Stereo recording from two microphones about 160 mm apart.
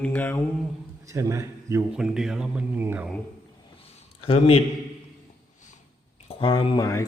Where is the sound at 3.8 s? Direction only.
35° left (ahead or behind).